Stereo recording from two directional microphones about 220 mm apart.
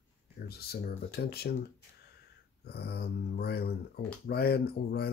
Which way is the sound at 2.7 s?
45° left (ahead or behind).